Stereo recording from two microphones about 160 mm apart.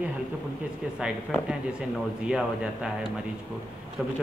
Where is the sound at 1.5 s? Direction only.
5° right (ahead or behind).